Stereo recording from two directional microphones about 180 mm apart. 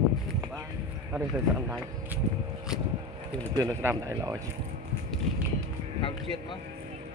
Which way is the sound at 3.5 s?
20° right (ahead or behind).